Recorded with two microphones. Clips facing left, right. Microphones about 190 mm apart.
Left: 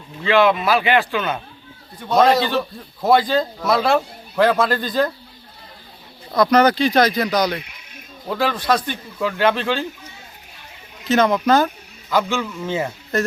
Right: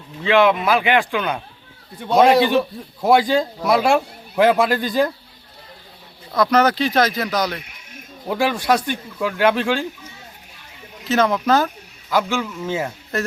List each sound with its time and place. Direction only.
0.3 s speech: 15° right (ahead or behind)
6.3 s speech: 5° right (ahead or behind)
11.1 s speech: centre (ahead or behind)